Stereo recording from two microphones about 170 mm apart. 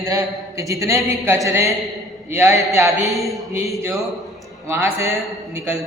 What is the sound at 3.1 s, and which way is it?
Speech, centre (ahead or behind).